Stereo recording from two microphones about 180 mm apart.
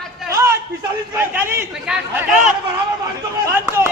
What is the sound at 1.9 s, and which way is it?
Speech, 5° right (ahead or behind).